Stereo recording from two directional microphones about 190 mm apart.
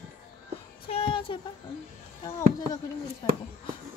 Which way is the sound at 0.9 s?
30° left (ahead or behind).